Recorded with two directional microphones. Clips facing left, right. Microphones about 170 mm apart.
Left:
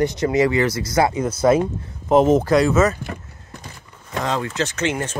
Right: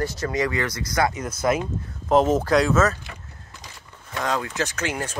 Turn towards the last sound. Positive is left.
turn(degrees=-10)  # may be behind; listen again after turning